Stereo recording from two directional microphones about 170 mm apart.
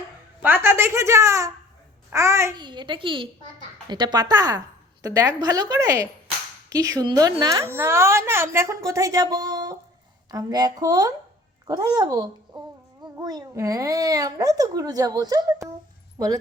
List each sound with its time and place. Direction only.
0.4 s speech: 10° right (ahead or behind)
2.6 s a woman's voice: 25° right (ahead or behind)
12.5 s a sound: 25° right (ahead or behind)
13.0 s a woman's voice: 25° right (ahead or behind)